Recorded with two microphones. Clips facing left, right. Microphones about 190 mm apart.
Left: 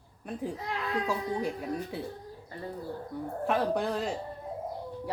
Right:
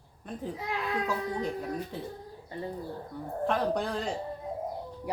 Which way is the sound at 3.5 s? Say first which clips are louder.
Left 1 dB; 5° left (ahead or behind).